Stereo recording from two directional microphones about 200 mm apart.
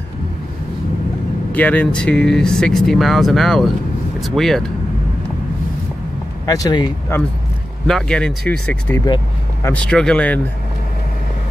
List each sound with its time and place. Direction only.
1.5 s speech: 5° left (ahead or behind)
6.4 s speech: 20° left (ahead or behind)
7.8 s speech: 5° left (ahead or behind)
9.0 s vehicle: 20° left (ahead or behind)
9.7 s speech: 5° left (ahead or behind)